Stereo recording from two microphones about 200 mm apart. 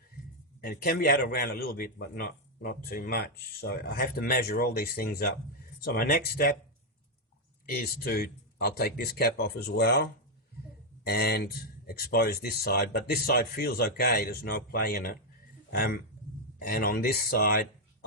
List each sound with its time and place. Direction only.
0.6 s a man's voice: 50° left (ahead or behind)
7.7 s a man's voice: 50° left (ahead or behind)